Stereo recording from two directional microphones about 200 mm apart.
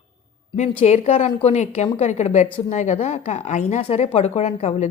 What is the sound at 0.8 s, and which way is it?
A woman's voice, 35° left (ahead or behind).